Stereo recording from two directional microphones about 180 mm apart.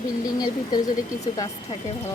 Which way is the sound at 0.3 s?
20° left (ahead or behind).